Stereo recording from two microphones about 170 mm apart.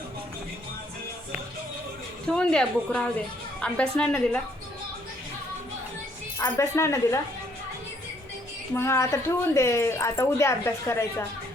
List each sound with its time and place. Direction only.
2.2 s a woman's voice: 5° left (ahead or behind)
6.4 s speech: 15° left (ahead or behind)
8.7 s speech: 15° left (ahead or behind)